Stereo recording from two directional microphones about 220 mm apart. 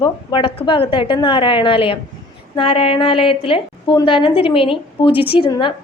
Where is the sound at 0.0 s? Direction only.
20° left (ahead or behind).